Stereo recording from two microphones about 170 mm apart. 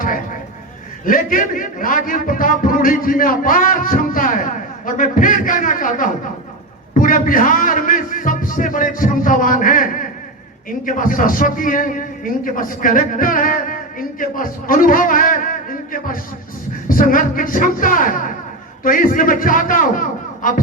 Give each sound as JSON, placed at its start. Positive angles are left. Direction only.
{"t": 1.0, "sound": "a man's voice", "side_deg": 55}